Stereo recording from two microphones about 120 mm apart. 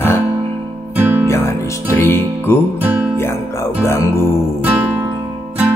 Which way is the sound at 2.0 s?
20° left (ahead or behind).